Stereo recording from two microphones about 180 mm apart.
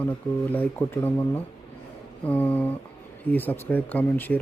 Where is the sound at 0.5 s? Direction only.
10° left (ahead or behind).